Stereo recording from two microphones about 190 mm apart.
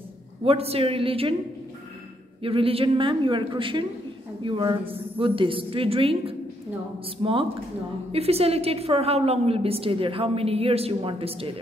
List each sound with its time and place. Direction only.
0.4 s a woman's voice: 30° right (ahead or behind)
2.4 s a woman's voice: 30° right (ahead or behind)
8.1 s a woman's voice: 30° right (ahead or behind)